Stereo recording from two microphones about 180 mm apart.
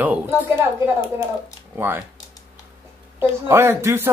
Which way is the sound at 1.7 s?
10° right (ahead or behind).